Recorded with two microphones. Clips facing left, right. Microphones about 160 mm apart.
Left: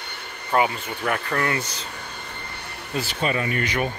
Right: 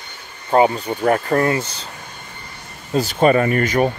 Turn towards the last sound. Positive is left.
turn(degrees=-45)  # may be behind; listen again after turning